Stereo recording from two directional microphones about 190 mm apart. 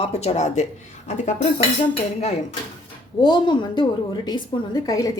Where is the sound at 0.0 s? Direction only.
35° left (ahead or behind).